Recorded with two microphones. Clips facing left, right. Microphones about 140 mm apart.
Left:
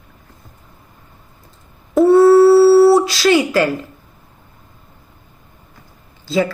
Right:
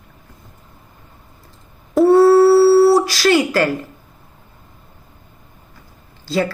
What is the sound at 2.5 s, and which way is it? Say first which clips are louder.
Dog: left 2 dB; 5° right (ahead or behind).